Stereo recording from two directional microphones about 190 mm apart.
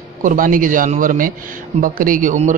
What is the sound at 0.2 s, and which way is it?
A man's voice, 45° right (ahead or behind).